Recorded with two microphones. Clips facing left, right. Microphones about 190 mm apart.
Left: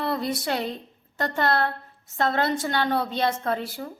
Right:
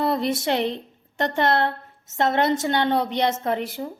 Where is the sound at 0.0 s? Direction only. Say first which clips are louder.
Right 4 dB; 25° right (ahead or behind).